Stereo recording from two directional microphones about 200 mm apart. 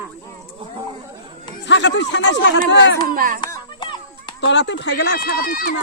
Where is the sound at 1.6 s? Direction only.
65° left (ahead or behind).